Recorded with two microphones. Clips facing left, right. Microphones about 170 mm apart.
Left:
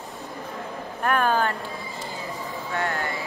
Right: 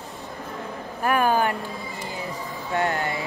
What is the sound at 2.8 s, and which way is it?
Speech, 20° right (ahead or behind).